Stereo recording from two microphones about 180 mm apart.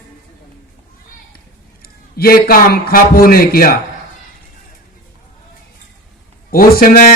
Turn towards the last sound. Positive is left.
turn(degrees=50)  # may be behind; listen again after turning